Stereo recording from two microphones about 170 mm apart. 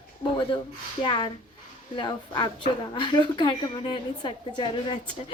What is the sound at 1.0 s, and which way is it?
A woman's voice, 25° left (ahead or behind).